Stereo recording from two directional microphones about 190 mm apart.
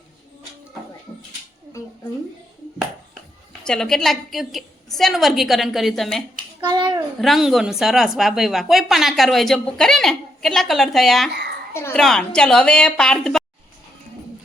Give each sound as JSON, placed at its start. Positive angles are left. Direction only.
{"t": 3.7, "sound": "a woman's voice", "side_deg": 0}
{"t": 6.6, "sound": "a child's voice", "side_deg": -25}
{"t": 7.2, "sound": "a woman's voice", "side_deg": 0}
{"t": 11.7, "sound": "a child's voice", "side_deg": 15}